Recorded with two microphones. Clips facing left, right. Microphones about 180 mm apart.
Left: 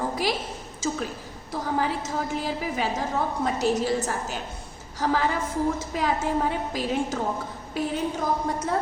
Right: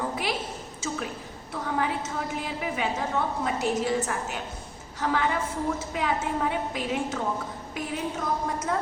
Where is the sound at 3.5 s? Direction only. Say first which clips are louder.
Left 4 dB; 35° left (ahead or behind).